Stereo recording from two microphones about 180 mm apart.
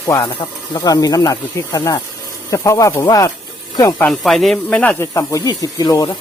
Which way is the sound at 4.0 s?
5° left (ahead or behind).